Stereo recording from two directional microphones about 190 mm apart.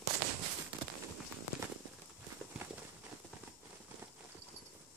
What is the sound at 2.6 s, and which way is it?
Clip-clop, 15° right (ahead or behind).